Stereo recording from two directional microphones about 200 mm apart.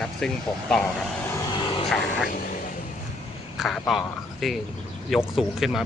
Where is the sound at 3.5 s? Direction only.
Centre (ahead or behind).